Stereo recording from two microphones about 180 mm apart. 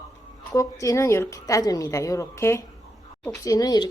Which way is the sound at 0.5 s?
15° left (ahead or behind).